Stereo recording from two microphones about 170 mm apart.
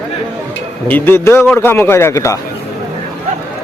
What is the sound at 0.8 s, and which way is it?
A man's voice, 10° left (ahead or behind).